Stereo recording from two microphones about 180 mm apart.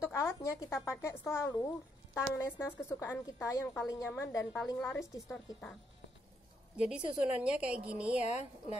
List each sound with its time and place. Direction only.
0.1 s a woman's voice: 15° left (ahead or behind)
6.8 s a woman's voice: 5° right (ahead or behind)
8.2 s a woman's voice: 40° left (ahead or behind)